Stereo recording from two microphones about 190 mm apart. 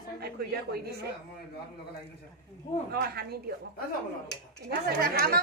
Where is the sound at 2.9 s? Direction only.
55° right (ahead or behind).